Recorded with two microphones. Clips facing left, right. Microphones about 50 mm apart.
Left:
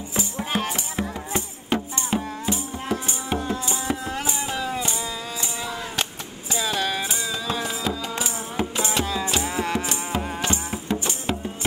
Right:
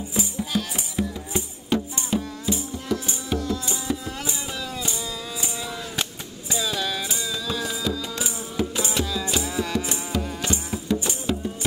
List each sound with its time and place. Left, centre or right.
0.1 s music: left
6.5 s music: left